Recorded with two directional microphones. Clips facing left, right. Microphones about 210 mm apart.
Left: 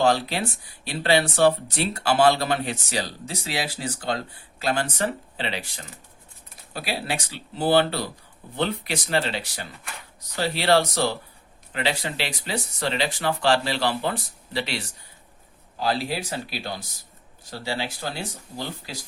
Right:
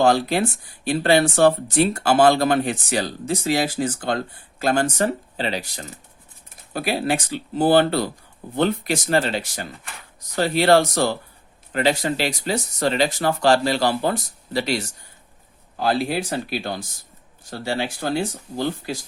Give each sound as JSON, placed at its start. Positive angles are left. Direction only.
{"t": 0.0, "sound": "speech", "side_deg": -50}
{"t": 15.8, "sound": "speech", "side_deg": -55}